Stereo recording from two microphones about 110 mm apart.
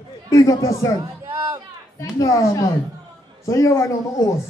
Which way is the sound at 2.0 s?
30° left (ahead or behind).